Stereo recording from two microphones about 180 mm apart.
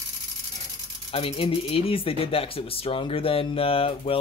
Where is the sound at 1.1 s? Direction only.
30° left (ahead or behind).